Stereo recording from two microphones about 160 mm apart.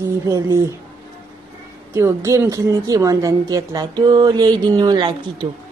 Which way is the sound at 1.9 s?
20° right (ahead or behind).